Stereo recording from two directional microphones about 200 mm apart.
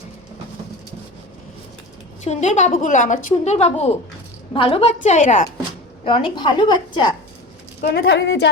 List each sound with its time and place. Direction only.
2.2 s a woman's voice: 35° left (ahead or behind)
6.1 s a woman's voice: 25° left (ahead or behind)
7.8 s a woman's voice: 55° left (ahead or behind)